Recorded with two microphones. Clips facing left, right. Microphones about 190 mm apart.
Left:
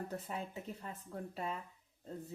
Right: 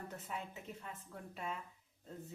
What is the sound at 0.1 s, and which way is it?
A woman's voice, 35° left (ahead or behind).